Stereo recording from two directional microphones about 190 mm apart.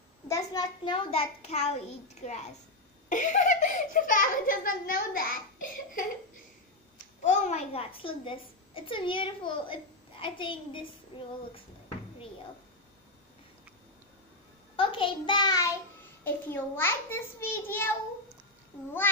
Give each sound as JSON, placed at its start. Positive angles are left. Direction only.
{"t": 0.3, "sound": "a child's voice", "side_deg": 20}
{"t": 7.2, "sound": "a child's voice", "side_deg": 40}
{"t": 14.8, "sound": "a child's voice", "side_deg": 25}